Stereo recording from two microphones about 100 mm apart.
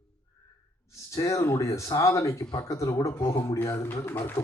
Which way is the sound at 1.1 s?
30° left (ahead or behind).